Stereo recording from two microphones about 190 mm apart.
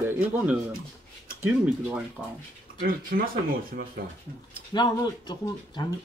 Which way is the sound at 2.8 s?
50° right (ahead or behind).